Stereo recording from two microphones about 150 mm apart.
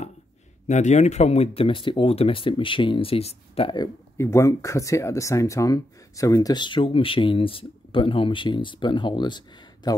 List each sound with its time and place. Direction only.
0.7 s speech: 50° left (ahead or behind)
3.7 s speech: 20° left (ahead or behind)